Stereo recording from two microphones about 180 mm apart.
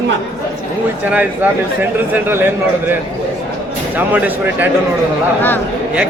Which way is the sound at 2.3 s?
10° right (ahead or behind).